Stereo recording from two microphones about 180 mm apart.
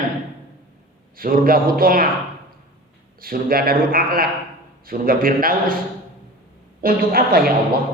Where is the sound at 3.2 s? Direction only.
55° right (ahead or behind).